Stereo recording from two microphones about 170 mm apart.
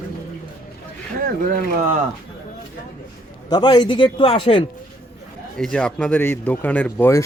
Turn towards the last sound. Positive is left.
turn(degrees=15)  # may be behind; listen again after turning